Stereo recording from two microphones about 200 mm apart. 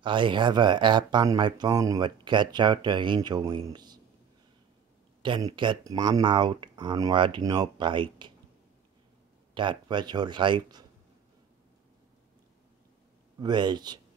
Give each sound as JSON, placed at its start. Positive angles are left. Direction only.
{"t": 0.0, "sound": "speech", "side_deg": -25}
{"t": 5.2, "sound": "speech", "side_deg": -25}
{"t": 9.5, "sound": "speech", "side_deg": -25}
{"t": 13.4, "sound": "speech", "side_deg": -20}